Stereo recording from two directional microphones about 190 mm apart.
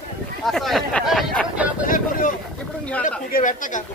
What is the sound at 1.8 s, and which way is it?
Vehicle, 45° left (ahead or behind).